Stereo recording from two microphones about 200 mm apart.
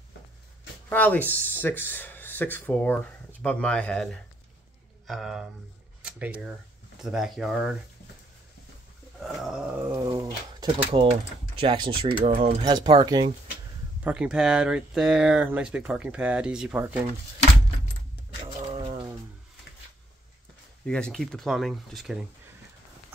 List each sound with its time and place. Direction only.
0.8 s speech: 10° left (ahead or behind)
9.2 s a sound: centre (ahead or behind)
10.0 s pigeon: 20° right (ahead or behind)
10.9 s speech: 30° right (ahead or behind)
14.0 s speech: 5° right (ahead or behind)
18.7 s a sound: 25° right (ahead or behind)
20.8 s speech: 5° left (ahead or behind)